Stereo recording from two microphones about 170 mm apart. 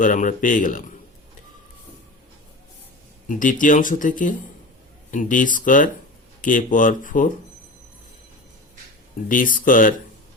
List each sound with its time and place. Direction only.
0.0 s speech: 50° left (ahead or behind)
3.2 s speech: 50° left (ahead or behind)
9.3 s speech: 50° left (ahead or behind)